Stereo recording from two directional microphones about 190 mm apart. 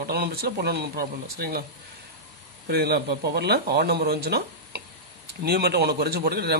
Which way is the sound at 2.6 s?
55° right (ahead or behind).